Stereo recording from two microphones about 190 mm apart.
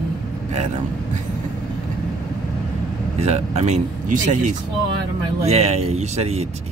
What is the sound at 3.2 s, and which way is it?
Speech, 35° right (ahead or behind).